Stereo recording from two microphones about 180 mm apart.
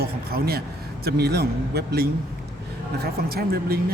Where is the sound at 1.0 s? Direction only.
65° right (ahead or behind).